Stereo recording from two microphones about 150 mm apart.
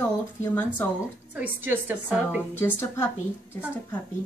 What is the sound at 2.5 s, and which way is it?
Speech, 15° left (ahead or behind).